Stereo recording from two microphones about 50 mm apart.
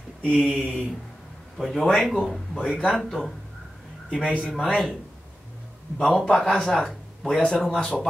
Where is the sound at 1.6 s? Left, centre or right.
Centre.